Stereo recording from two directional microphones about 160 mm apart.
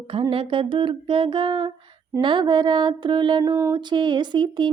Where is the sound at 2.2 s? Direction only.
30° right (ahead or behind).